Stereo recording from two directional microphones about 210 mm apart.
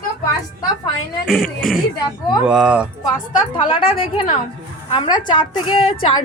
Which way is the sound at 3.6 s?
25° left (ahead or behind).